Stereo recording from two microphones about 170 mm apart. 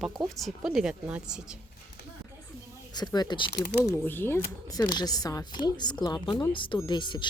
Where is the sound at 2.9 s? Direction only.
25° left (ahead or behind).